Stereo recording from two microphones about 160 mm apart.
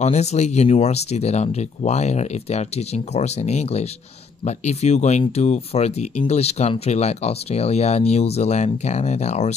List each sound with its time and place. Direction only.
0.0 s speech: 45° left (ahead or behind)